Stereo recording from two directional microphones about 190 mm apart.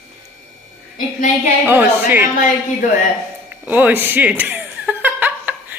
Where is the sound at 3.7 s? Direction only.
10° right (ahead or behind).